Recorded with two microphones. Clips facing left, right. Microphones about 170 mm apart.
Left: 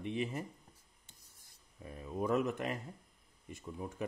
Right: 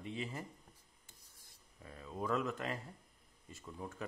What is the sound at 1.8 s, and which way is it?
Speech, 20° left (ahead or behind).